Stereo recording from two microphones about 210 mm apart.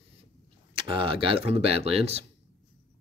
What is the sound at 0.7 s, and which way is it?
Speech, 25° right (ahead or behind).